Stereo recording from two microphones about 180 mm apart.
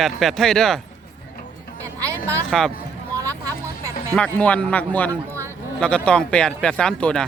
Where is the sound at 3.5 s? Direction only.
15° right (ahead or behind).